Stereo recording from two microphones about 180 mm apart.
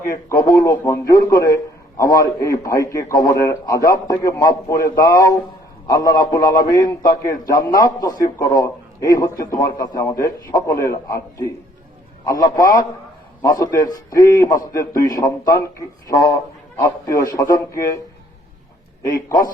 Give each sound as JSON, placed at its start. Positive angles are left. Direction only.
{"t": 0.3, "sound": "a man's voice", "side_deg": 20}